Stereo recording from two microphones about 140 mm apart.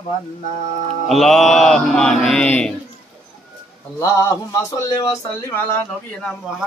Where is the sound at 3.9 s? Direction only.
20° left (ahead or behind).